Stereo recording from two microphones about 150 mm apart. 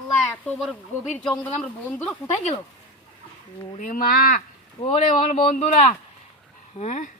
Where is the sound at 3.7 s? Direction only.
65° left (ahead or behind).